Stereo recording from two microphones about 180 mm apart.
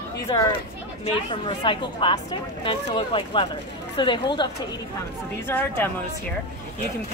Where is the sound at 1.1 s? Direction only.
30° left (ahead or behind).